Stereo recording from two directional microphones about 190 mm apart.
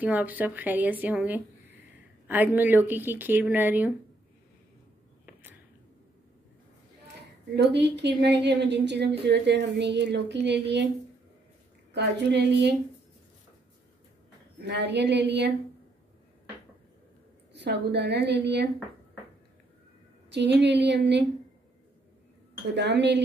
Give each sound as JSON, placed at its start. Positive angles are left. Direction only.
{"t": 0.0, "sound": "speech", "side_deg": -10}
{"t": 7.7, "sound": "speech", "side_deg": -65}
{"t": 11.9, "sound": "speech", "side_deg": -65}
{"t": 14.6, "sound": "speech", "side_deg": -65}
{"t": 17.5, "sound": "speech", "side_deg": -60}
{"t": 20.2, "sound": "speech", "side_deg": -65}
{"t": 22.8, "sound": "speech", "side_deg": -65}